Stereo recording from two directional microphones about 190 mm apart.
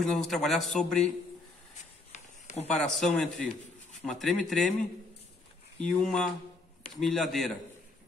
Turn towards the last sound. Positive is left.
turn(degrees=0)  # may be behind; listen again after turning